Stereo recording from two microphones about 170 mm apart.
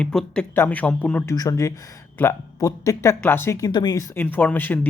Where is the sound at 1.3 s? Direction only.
20° left (ahead or behind).